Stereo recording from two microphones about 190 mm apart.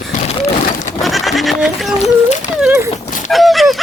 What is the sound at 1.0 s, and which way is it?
Speech, centre (ahead or behind).